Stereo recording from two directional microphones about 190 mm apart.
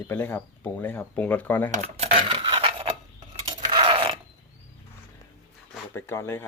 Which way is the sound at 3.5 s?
25° right (ahead or behind).